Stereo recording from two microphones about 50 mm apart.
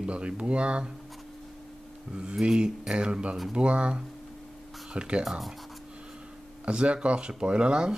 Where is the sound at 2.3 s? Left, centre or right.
Centre.